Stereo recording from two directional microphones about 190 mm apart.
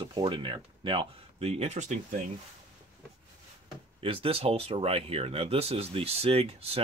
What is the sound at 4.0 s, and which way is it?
Speech, 30° right (ahead or behind).